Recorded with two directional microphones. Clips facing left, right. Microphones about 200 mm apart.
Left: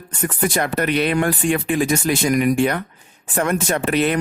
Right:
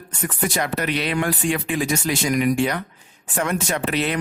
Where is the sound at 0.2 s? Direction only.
50° left (ahead or behind).